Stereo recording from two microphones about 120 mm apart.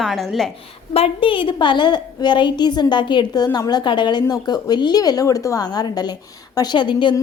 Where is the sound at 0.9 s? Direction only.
50° left (ahead or behind).